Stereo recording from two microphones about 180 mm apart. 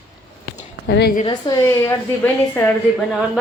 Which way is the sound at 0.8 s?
60° left (ahead or behind).